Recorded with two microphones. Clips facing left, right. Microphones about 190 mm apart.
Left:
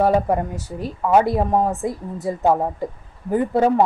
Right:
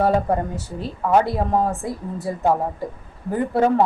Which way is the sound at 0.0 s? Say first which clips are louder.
Left 1 dB; 15° left (ahead or behind).